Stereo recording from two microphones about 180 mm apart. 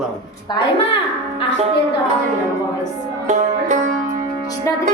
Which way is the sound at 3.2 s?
40° right (ahead or behind).